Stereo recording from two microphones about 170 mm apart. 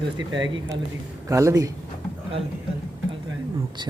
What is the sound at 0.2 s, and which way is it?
Speech, 25° right (ahead or behind).